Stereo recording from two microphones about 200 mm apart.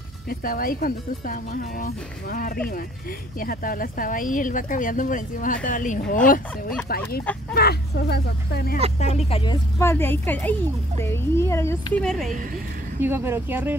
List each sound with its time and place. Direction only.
0.3 s speech: 45° left (ahead or behind)
9.0 s speech: 30° left (ahead or behind)
9.8 s speech: 10° left (ahead or behind)
13.0 s speech: 10° right (ahead or behind)